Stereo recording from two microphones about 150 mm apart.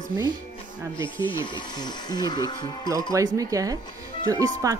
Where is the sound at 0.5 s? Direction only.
30° left (ahead or behind).